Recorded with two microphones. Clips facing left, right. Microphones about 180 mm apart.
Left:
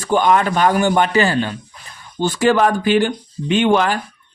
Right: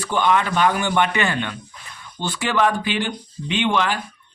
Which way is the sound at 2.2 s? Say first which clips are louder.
Left 7 dB; 45° left (ahead or behind).